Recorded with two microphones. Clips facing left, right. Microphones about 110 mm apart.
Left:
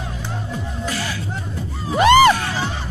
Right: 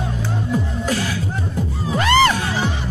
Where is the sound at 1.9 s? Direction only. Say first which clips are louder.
Left 4 dB; 15° left (ahead or behind).